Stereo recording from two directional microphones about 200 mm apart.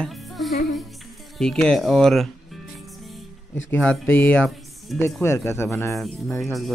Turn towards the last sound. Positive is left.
turn(degrees=0)  # may be behind; listen again after turning